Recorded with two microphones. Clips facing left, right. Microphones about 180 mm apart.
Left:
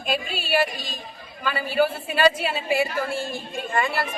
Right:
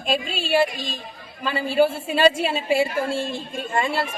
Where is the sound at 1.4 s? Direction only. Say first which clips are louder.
Right 3 dB; 25° right (ahead or behind).